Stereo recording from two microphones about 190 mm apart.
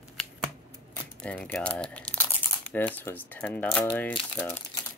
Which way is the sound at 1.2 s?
10° left (ahead or behind).